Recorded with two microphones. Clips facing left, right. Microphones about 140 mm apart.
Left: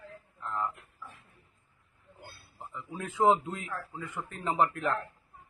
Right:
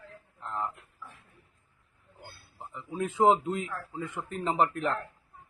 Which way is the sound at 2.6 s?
15° right (ahead or behind).